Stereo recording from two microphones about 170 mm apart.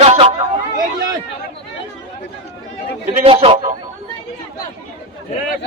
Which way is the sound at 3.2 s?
35° right (ahead or behind).